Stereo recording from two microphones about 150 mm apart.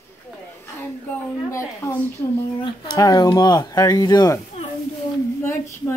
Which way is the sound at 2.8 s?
25° left (ahead or behind).